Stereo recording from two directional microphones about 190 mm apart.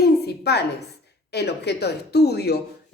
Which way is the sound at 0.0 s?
60° left (ahead or behind).